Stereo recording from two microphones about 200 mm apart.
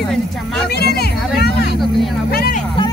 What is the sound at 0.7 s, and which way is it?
Speech, 55° left (ahead or behind).